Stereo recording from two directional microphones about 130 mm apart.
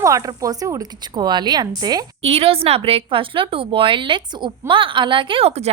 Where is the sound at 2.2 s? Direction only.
50° right (ahead or behind).